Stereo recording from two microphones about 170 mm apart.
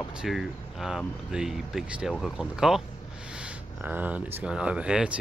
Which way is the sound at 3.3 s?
10° right (ahead or behind).